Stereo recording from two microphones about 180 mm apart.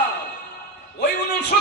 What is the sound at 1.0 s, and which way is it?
Music, 70° left (ahead or behind).